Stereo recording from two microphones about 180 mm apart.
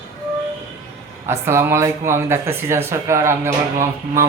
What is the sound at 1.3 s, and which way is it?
Speech, 15° right (ahead or behind).